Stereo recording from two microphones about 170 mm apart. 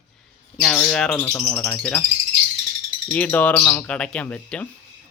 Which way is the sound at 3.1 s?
10° left (ahead or behind).